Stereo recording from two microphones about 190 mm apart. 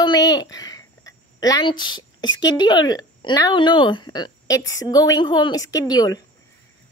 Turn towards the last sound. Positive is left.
turn(degrees=20)  # may be behind; listen again after turning